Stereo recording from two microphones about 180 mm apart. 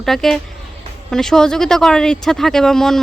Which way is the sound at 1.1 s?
5° left (ahead or behind).